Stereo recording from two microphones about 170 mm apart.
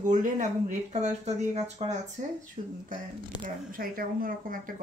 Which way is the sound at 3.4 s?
55° right (ahead or behind).